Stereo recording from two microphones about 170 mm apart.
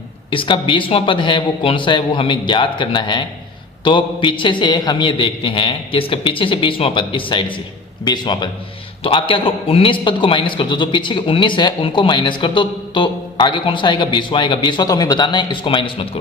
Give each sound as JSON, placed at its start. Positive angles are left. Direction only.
{"t": 0.3, "sound": "a man's voice", "side_deg": 30}